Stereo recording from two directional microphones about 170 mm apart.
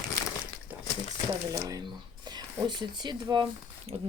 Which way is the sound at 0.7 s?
10° right (ahead or behind).